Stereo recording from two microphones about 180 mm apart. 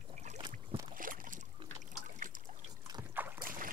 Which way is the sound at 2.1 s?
50° right (ahead or behind).